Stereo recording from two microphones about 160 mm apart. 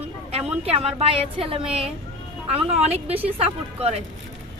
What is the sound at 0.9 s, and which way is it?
Speech, 35° right (ahead or behind).